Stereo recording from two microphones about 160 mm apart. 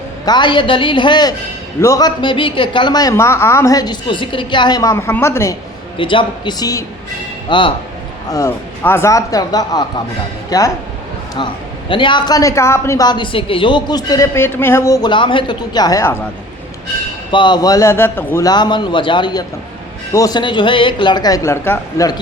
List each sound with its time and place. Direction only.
0.3 s a woman's voice: 30° left (ahead or behind)
6.0 s a woman's voice: 30° left (ahead or behind)
8.3 s a woman's voice: 15° left (ahead or behind)
11.9 s a woman's voice: 30° left (ahead or behind)
17.3 s a woman's voice: 30° left (ahead or behind)
18.4 s a woman's voice: 25° left (ahead or behind)